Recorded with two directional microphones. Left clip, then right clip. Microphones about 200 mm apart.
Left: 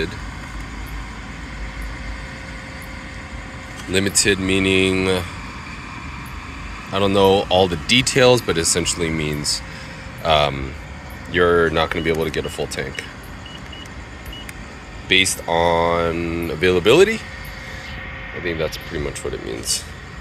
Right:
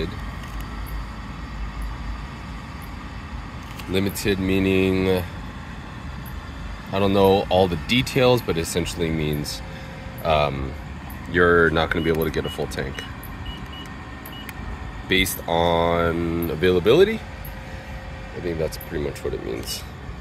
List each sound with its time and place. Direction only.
3.9 s speech: 10° right (ahead or behind)
6.9 s speech: 15° right (ahead or behind)
11.3 s speech: 20° right (ahead or behind)
15.0 s speech: 20° right (ahead or behind); by 17.2 s 5° right (ahead or behind)